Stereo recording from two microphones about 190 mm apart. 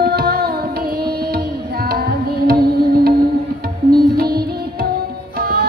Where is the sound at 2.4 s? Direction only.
55° right (ahead or behind).